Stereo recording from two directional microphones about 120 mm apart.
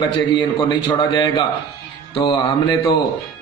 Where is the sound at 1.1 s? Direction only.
40° left (ahead or behind).